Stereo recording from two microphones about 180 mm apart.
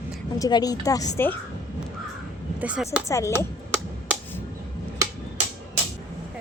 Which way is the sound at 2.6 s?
5° right (ahead or behind).